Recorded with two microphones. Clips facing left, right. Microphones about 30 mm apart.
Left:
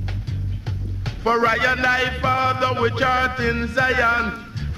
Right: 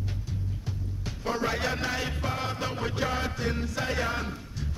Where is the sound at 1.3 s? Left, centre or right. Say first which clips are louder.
Left 11 dB; left.